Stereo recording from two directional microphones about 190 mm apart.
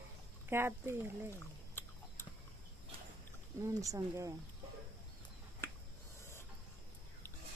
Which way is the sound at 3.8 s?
15° right (ahead or behind).